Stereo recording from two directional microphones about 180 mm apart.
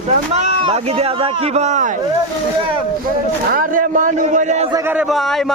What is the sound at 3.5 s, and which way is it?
A man's voice, 45° right (ahead or behind).